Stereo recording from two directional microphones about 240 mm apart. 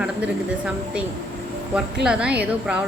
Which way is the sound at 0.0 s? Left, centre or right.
Centre.